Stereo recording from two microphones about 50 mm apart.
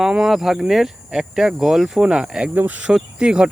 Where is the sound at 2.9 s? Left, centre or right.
Centre.